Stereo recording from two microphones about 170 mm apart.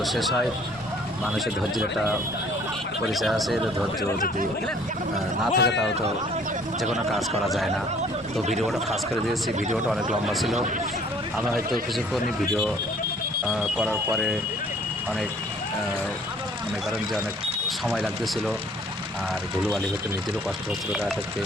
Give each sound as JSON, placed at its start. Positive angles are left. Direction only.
{"t": 0.0, "sound": "speech", "side_deg": 0}
{"t": 1.4, "sound": "speech", "side_deg": 0}
{"t": 5.5, "sound": "speech", "side_deg": 80}
{"t": 6.8, "sound": "speech", "side_deg": 0}
{"t": 9.7, "sound": "speech", "side_deg": 0}
{"t": 13.5, "sound": "speech", "side_deg": -5}
{"t": 17.8, "sound": "speech", "side_deg": -5}